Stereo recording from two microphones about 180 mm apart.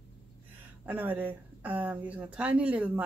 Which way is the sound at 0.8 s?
10° right (ahead or behind).